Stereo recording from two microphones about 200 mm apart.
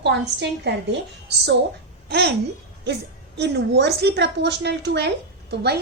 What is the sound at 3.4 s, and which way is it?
A woman's voice, 55° right (ahead or behind).